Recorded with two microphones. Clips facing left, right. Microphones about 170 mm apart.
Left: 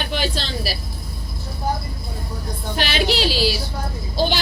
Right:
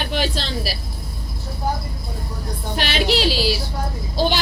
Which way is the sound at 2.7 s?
Centre (ahead or behind).